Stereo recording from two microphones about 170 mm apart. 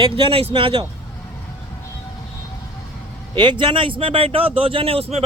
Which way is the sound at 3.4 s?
25° right (ahead or behind).